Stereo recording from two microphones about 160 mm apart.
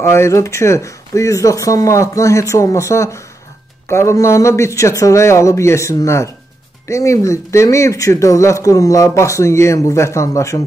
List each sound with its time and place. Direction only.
0.0 s speech: 15° left (ahead or behind)